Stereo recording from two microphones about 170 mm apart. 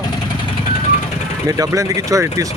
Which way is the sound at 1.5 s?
20° right (ahead or behind).